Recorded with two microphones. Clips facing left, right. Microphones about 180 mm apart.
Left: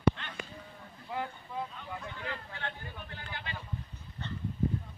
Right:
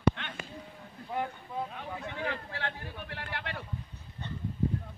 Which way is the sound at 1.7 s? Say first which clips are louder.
Right 3 dB; 70° right (ahead or behind).